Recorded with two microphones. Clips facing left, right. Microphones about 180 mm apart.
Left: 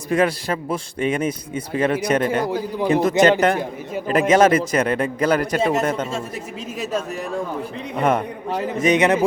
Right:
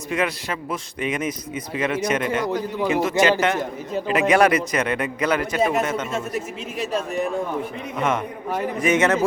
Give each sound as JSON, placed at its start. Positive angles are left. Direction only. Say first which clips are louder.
{"t": 0.1, "sound": "a man's voice", "louder": "left 5 dB", "side_deg": 35}
{"t": 2.5, "sound": "speech", "louder": "left 1 dB", "side_deg": 10}
{"t": 2.8, "sound": "a man's voice", "louder": "left 4 dB", "side_deg": 40}
{"t": 4.3, "sound": "a man's voice", "louder": "left 3 dB", "side_deg": 25}
{"t": 7.9, "sound": "a man's voice", "louder": "left 4 dB", "side_deg": 35}
{"t": 8.8, "sound": "speech", "louder": "left 3 dB", "side_deg": 15}